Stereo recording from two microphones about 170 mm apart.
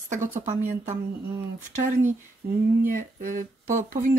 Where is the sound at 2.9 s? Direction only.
50° right (ahead or behind).